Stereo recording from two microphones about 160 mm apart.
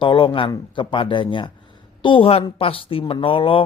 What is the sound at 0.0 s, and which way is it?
Speech, 30° left (ahead or behind).